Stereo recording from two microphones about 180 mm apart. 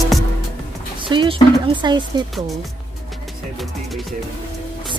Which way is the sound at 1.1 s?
25° right (ahead or behind).